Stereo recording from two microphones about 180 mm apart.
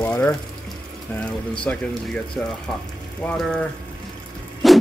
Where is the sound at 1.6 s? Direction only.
5° left (ahead or behind).